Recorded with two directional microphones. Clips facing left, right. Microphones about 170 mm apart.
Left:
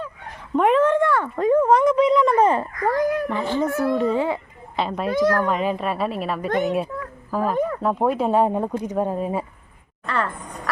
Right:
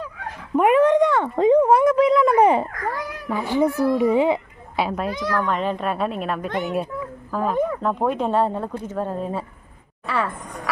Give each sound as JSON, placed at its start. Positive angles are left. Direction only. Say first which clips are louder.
{"t": 0.5, "sound": "speech", "louder": "right 2 dB", "side_deg": -10}
{"t": 1.7, "sound": "a woman's voice", "louder": "right 1 dB", "side_deg": -5}
{"t": 2.3, "sound": "speech", "louder": "right 2 dB", "side_deg": -15}
{"t": 2.8, "sound": "a child's voice", "louder": "left 8 dB", "side_deg": 45}
{"t": 3.2, "sound": "speech", "louder": "right 2 dB", "side_deg": -10}
{"t": 4.8, "sound": "a woman's voice", "louder": "even", "side_deg": -5}
{"t": 5.1, "sound": "a child's voice", "louder": "left 5 dB", "side_deg": 50}
{"t": 5.5, "sound": "a woman's voice", "louder": "left 1 dB", "side_deg": 5}
{"t": 6.5, "sound": "a child's voice", "louder": "left 4 dB", "side_deg": 45}
{"t": 7.3, "sound": "speech", "louder": "even", "side_deg": 10}
{"t": 10.1, "sound": "a woman's voice", "louder": "right 1 dB", "side_deg": -5}